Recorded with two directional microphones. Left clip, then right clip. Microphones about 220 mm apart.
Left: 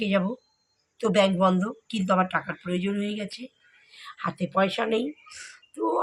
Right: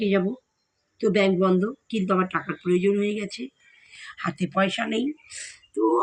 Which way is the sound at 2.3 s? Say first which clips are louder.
Right 4 dB; 25° left (ahead or behind).